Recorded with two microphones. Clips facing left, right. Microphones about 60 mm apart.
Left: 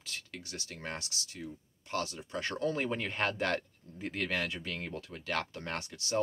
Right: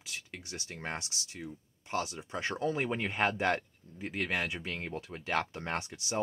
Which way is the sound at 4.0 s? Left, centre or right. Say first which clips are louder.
Right 1 dB; centre.